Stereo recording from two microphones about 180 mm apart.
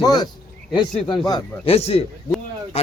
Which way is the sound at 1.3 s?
30° left (ahead or behind).